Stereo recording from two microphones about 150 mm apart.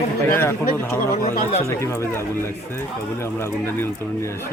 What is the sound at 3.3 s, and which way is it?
Speech, 15° left (ahead or behind).